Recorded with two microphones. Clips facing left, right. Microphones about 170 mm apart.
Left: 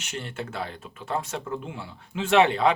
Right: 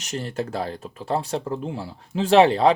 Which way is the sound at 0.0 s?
40° right (ahead or behind).